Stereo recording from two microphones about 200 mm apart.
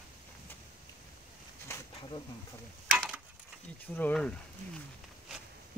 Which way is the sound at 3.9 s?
5° left (ahead or behind).